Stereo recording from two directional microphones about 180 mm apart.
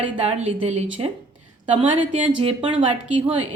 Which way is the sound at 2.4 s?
30° right (ahead or behind).